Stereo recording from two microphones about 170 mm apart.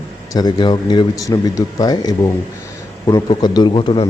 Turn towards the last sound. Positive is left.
turn(degrees=30)  # may be behind; listen again after turning